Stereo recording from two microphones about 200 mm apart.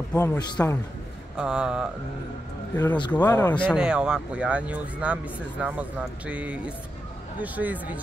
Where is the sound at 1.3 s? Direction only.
5° right (ahead or behind).